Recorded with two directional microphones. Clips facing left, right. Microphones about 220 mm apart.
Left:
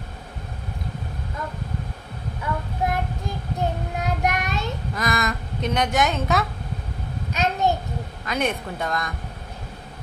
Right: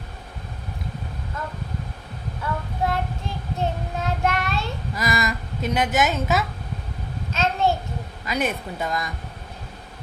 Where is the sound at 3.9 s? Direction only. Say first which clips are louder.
Right 1 dB; 15° left (ahead or behind).